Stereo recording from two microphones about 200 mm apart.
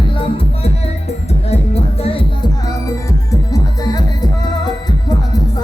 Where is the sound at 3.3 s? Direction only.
20° left (ahead or behind).